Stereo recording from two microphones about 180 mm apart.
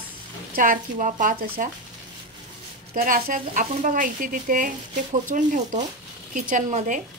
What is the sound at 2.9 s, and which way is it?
Speech, 50° right (ahead or behind).